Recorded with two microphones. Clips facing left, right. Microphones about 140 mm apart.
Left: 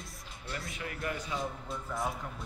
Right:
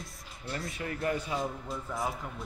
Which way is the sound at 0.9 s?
35° right (ahead or behind).